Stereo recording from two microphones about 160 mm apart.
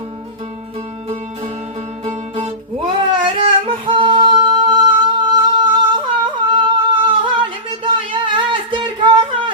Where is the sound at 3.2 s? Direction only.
30° right (ahead or behind).